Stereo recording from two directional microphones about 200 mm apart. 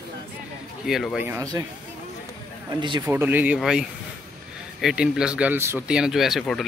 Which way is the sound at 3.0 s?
10° right (ahead or behind).